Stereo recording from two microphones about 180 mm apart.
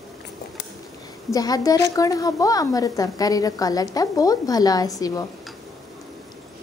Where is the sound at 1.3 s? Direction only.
20° left (ahead or behind).